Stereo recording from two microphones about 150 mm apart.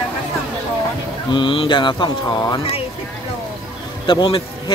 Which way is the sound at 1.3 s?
35° left (ahead or behind).